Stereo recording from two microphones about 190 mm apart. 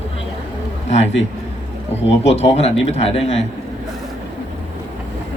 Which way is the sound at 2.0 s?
35° left (ahead or behind).